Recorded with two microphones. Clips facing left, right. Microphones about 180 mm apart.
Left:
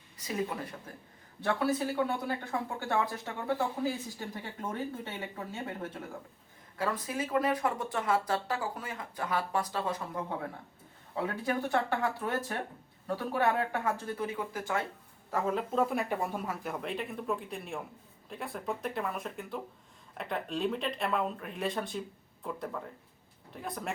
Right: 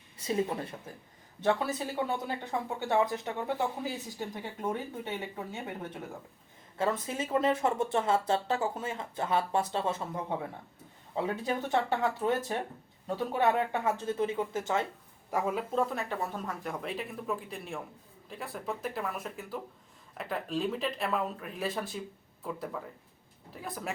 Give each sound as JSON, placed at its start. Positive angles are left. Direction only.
{"t": 0.2, "sound": "speech", "side_deg": -25}
{"t": 15.3, "sound": "speech", "side_deg": -10}
{"t": 15.8, "sound": "speech", "side_deg": 10}